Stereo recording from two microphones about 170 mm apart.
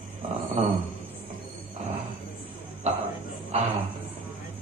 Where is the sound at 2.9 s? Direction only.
40° right (ahead or behind).